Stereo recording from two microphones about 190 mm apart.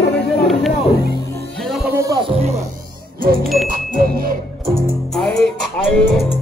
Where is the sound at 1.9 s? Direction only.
20° right (ahead or behind).